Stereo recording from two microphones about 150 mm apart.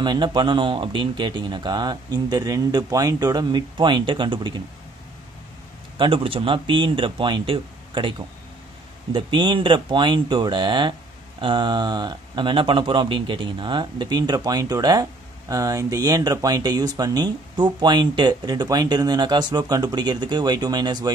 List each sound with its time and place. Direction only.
0.0 s speech: 30° right (ahead or behind)
5.9 s speech: 35° right (ahead or behind)
9.1 s speech: 30° right (ahead or behind)